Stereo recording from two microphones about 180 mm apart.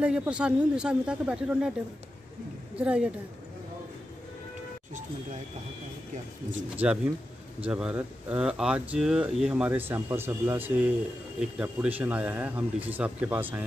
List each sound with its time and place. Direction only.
0.0 s speech: 5° right (ahead or behind)
2.7 s a woman's voice: 5° right (ahead or behind)
6.8 s speech: 10° right (ahead or behind)